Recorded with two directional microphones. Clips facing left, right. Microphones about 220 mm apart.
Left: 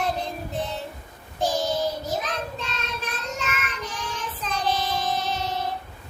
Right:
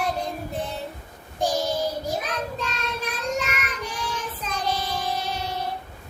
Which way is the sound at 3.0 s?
10° right (ahead or behind).